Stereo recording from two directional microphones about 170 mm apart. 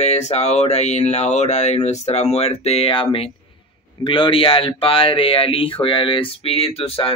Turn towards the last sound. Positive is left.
turn(degrees=35)  # may be behind; listen again after turning